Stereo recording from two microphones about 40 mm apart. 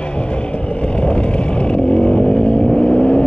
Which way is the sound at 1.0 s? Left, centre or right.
Left.